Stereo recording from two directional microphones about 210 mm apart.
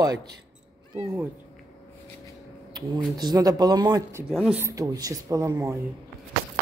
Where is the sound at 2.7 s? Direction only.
20° right (ahead or behind).